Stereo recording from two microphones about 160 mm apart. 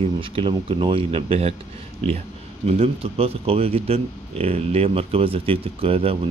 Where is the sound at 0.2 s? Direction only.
35° right (ahead or behind).